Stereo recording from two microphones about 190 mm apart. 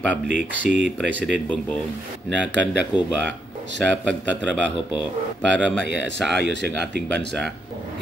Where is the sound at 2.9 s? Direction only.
5° right (ahead or behind).